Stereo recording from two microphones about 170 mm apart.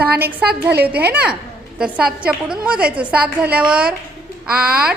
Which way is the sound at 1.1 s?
5° right (ahead or behind).